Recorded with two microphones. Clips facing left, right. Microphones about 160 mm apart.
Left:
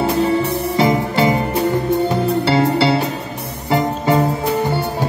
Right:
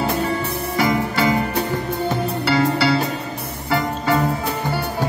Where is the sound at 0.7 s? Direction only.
25° left (ahead or behind).